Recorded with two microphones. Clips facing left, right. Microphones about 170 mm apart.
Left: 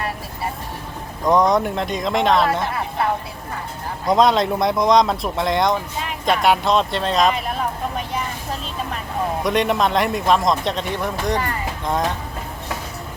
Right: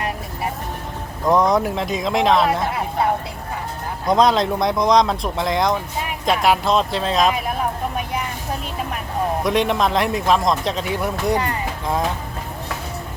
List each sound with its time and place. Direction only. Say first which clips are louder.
1.2 s a man's voice: even; centre (ahead or behind)
2.6 s speech: right 1 dB; 20° right (ahead or behind)
4.0 s a man's voice: even; centre (ahead or behind)
9.4 s a man's voice: left 1 dB; centre (ahead or behind)